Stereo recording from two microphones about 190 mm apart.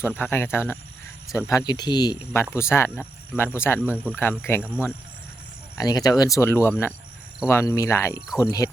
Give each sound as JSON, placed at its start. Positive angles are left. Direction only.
{"t": 0.0, "sound": "speech", "side_deg": 10}
{"t": 3.8, "sound": "speech", "side_deg": -5}
{"t": 4.2, "sound": "speech", "side_deg": 10}
{"t": 5.7, "sound": "speech", "side_deg": 20}